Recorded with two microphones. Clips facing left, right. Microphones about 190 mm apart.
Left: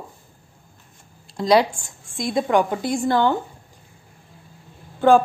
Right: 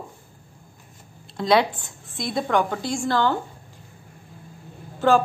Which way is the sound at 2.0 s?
45° left (ahead or behind).